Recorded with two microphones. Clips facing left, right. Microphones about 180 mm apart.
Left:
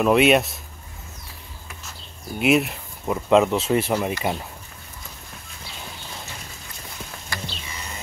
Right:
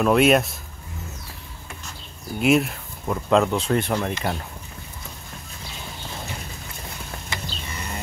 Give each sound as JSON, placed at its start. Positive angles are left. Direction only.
{"t": 0.0, "sound": "speech", "side_deg": 0}
{"t": 2.3, "sound": "speech", "side_deg": 0}
{"t": 7.3, "sound": "a sound", "side_deg": -20}